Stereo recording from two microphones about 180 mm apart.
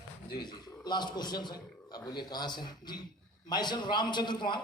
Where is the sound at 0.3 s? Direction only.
25° left (ahead or behind).